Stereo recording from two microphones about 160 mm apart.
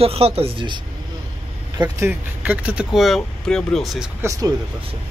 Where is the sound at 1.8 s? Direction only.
15° right (ahead or behind).